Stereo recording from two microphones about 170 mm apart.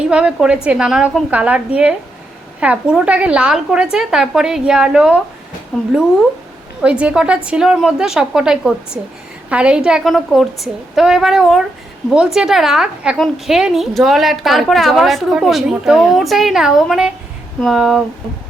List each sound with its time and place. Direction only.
0.1 s a woman's voice: 5° right (ahead or behind)
6.8 s a woman's voice: 5° right (ahead or behind)